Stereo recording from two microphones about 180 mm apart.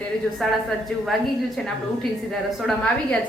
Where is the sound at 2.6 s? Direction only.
5° left (ahead or behind).